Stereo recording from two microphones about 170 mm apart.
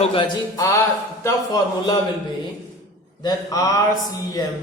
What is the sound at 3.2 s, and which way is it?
Speech, 20° left (ahead or behind).